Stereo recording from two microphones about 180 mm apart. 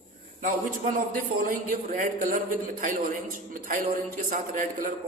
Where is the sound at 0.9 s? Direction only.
50° right (ahead or behind).